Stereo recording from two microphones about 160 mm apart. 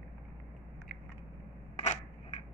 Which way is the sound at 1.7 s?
45° left (ahead or behind).